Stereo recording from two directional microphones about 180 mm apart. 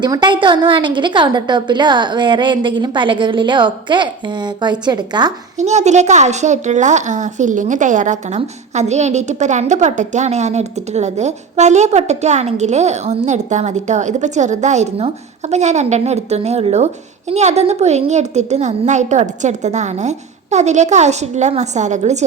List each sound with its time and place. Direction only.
0.0 s a woman's voice: 25° right (ahead or behind)
5.5 s a woman's voice: 40° right (ahead or behind)